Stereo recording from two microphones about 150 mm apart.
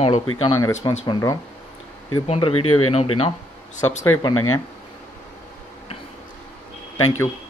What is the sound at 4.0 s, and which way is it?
Speech, 25° left (ahead or behind).